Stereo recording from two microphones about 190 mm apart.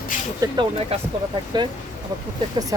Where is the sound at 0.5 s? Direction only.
25° right (ahead or behind).